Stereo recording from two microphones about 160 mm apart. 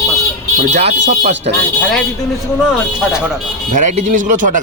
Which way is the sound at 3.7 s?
50° right (ahead or behind).